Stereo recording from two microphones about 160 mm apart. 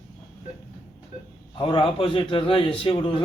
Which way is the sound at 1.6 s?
35° left (ahead or behind).